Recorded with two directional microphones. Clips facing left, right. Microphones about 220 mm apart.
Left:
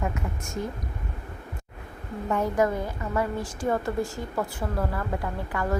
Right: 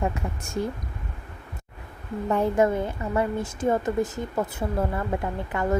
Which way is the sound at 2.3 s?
25° right (ahead or behind).